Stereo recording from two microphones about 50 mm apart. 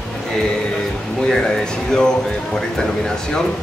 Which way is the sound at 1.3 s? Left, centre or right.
Centre.